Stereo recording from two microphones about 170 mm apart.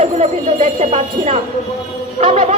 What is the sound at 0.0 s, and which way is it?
A woman's voice, 40° right (ahead or behind).